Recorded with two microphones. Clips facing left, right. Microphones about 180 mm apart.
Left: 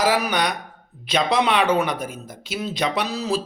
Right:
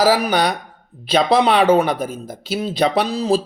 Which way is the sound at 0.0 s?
30° right (ahead or behind).